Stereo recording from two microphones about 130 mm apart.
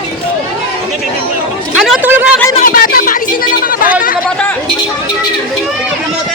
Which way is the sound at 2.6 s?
90° left.